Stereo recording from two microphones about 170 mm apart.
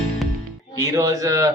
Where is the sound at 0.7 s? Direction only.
20° right (ahead or behind).